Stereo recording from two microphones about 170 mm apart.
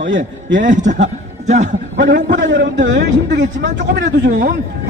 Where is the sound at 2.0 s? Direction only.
90° right.